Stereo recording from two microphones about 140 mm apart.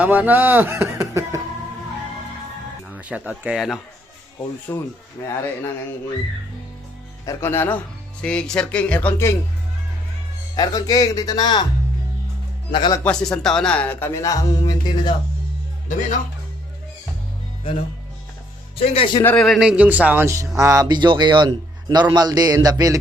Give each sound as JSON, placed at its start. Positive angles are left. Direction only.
{"t": 0.0, "sound": "speech", "side_deg": -10}
{"t": 2.9, "sound": "speech", "side_deg": -10}
{"t": 4.7, "sound": "speech", "side_deg": 15}
{"t": 7.3, "sound": "speech", "side_deg": 15}
{"t": 10.5, "sound": "speech", "side_deg": 30}
{"t": 12.7, "sound": "speech", "side_deg": 35}
{"t": 13.1, "sound": "speech", "side_deg": 5}
{"t": 18.8, "sound": "speech", "side_deg": 40}
{"t": 19.4, "sound": "a man's voice", "side_deg": 0}